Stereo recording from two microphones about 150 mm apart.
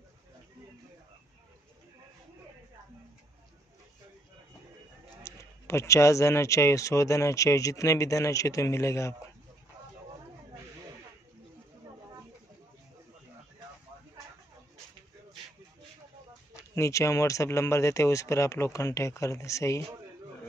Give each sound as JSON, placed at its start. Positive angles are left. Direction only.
{"t": 5.2, "sound": "speech", "side_deg": 20}
{"t": 16.7, "sound": "speech", "side_deg": 20}